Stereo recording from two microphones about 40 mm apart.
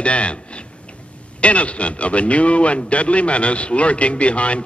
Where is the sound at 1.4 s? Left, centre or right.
Left.